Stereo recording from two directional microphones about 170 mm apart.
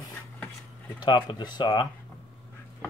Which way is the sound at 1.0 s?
25° left (ahead or behind).